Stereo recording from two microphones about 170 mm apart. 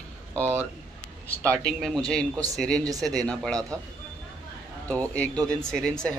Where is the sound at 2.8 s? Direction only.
20° right (ahead or behind).